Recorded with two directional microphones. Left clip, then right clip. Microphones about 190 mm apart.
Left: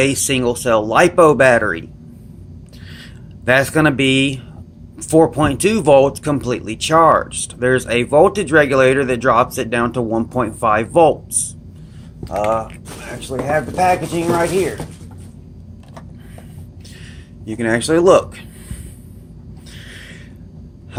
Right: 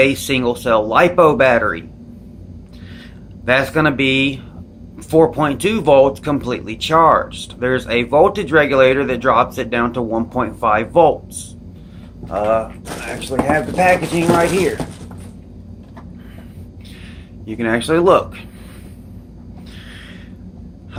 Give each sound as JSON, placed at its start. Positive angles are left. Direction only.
{"t": 0.0, "sound": "speech", "side_deg": 45}
{"t": 3.4, "sound": "speech", "side_deg": 50}
{"t": 13.3, "sound": "speech", "side_deg": 20}
{"t": 13.7, "sound": "speech", "side_deg": 35}
{"t": 17.4, "sound": "speech", "side_deg": 40}